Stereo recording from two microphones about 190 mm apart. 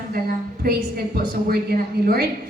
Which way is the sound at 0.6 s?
50° right (ahead or behind).